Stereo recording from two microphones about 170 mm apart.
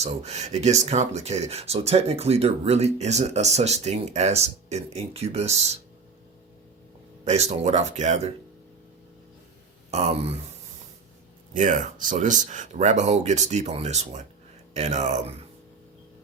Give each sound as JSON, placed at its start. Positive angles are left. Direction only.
{"t": 0.0, "sound": "speech", "side_deg": -40}
{"t": 7.3, "sound": "speech", "side_deg": -40}
{"t": 9.9, "sound": "speech", "side_deg": -40}
{"t": 11.5, "sound": "speech", "side_deg": -45}